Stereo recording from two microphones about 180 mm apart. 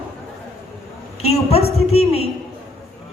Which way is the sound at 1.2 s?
35° left (ahead or behind).